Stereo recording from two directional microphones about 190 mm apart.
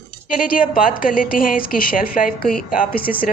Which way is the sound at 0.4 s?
50° left (ahead or behind).